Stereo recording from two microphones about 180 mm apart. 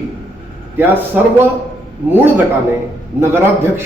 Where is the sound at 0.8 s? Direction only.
10° right (ahead or behind).